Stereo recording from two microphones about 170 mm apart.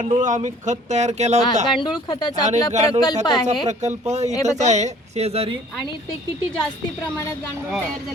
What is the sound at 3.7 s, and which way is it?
A man's voice, 40° right (ahead or behind).